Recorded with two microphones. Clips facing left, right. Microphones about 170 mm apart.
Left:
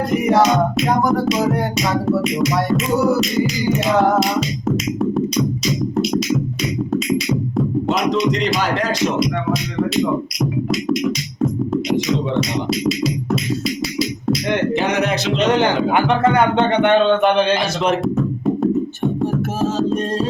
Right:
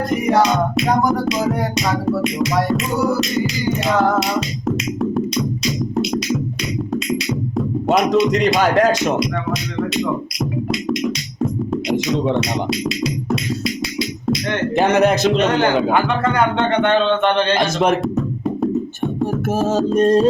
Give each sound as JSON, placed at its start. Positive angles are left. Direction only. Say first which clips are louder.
{"t": 0.3, "sound": "music", "louder": "left 1 dB", "side_deg": 0}
{"t": 7.9, "sound": "music", "louder": "right 6 dB", "side_deg": -50}
{"t": 9.1, "sound": "music", "louder": "left 1 dB", "side_deg": 0}
{"t": 12.8, "sound": "music", "louder": "left 2 dB", "side_deg": 0}
{"t": 14.8, "sound": "music", "louder": "right 5 dB", "side_deg": -45}
{"t": 15.9, "sound": "speech", "louder": "left 2 dB", "side_deg": 20}
{"t": 19.5, "sound": "music", "louder": "right 5 dB", "side_deg": -45}